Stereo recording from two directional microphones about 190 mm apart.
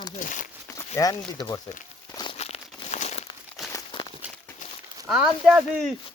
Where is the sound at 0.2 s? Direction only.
45° left (ahead or behind).